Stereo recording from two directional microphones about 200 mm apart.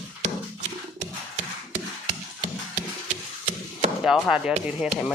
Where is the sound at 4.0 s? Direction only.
Centre (ahead or behind).